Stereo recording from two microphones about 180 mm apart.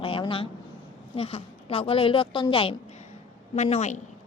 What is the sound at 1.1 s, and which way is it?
A woman's voice, 30° left (ahead or behind).